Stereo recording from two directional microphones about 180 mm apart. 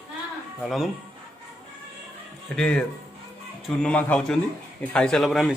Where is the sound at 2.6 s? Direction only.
5° left (ahead or behind).